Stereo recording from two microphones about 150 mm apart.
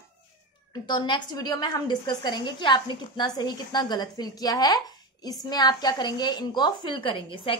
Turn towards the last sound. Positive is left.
turn(degrees=35)  # may be behind; listen again after turning